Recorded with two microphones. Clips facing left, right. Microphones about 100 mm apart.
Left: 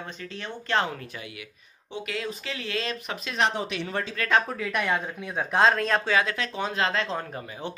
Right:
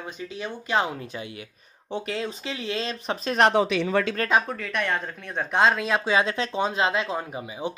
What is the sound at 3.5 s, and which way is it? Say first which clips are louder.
Speech: right 8 dB; 85° right.